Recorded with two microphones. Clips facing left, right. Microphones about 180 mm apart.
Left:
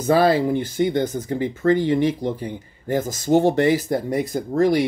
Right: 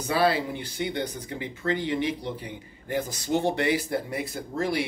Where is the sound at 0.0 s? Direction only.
40° left (ahead or behind).